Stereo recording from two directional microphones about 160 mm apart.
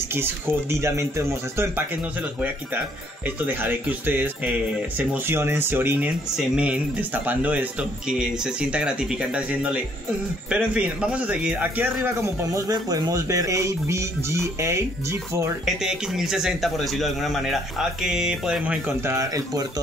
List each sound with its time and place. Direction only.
0.1 s a man's voice: 15° right (ahead or behind)
3.4 s a man's voice: 10° right (ahead or behind)
15.6 s a man's voice: 5° right (ahead or behind); by 19.6 s 20° right (ahead or behind)